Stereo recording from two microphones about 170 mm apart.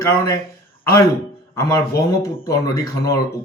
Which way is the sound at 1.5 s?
20° left (ahead or behind).